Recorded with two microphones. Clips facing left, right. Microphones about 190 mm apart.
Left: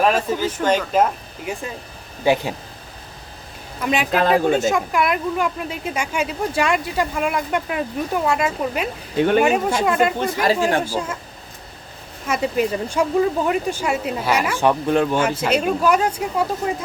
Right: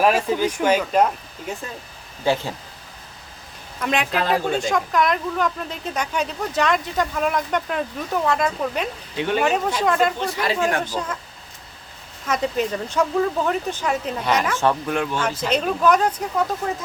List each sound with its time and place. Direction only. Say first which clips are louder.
0.0 s speech: even; 10° right (ahead or behind)
1.5 s speech: left 3 dB; 10° left (ahead or behind)
3.8 s speech: left 2 dB; 5° left (ahead or behind)
4.1 s speech: left 7 dB; 45° left (ahead or behind)
4.5 s speech: left 2 dB; 5° left (ahead or behind)
9.1 s speech: left 6 dB; 50° left (ahead or behind)
9.4 s speech: left 3 dB; 10° left (ahead or behind)
10.2 s speech: left 4 dB; 45° left (ahead or behind)
10.8 s speech: left 3 dB; 10° left (ahead or behind)
12.3 s speech: left 2 dB; 10° left (ahead or behind)
14.8 s speech: left 6 dB; 35° left (ahead or behind)
15.2 s speech: left 3 dB; 10° left (ahead or behind)